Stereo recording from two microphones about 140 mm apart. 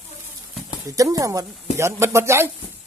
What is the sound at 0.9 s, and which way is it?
Speech, 25° right (ahead or behind).